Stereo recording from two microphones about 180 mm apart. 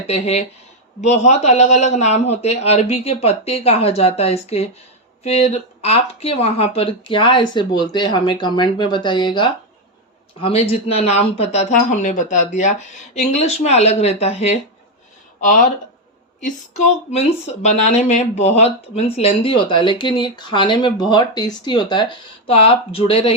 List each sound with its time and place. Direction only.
0.1 s a man's voice: 35° left (ahead or behind)